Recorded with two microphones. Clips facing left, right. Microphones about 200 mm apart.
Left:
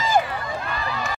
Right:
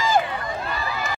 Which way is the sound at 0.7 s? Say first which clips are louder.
Even; centre (ahead or behind).